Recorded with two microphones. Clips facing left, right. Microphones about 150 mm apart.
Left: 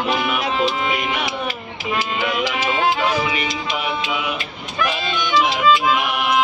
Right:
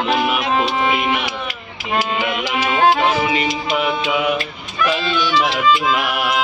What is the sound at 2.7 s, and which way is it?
Music, 45° right (ahead or behind).